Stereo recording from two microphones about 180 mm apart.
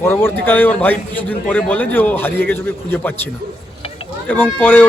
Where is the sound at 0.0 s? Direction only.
15° left (ahead or behind).